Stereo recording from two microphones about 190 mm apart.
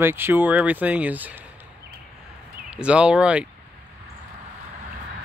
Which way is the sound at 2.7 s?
5° right (ahead or behind).